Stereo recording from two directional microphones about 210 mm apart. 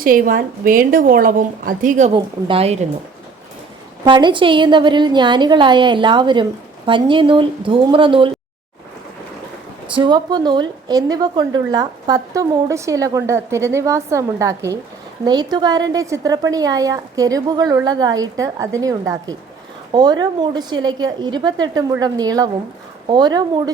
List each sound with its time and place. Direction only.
0.0 s a woman's voice: 45° right (ahead or behind); by 2.7 s 25° right (ahead or behind)
4.0 s a woman's voice: 20° right (ahead or behind)
9.9 s a woman's voice: 20° right (ahead or behind)